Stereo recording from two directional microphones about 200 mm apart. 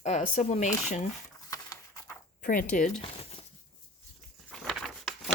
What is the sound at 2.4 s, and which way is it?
Speech, 45° left (ahead or behind).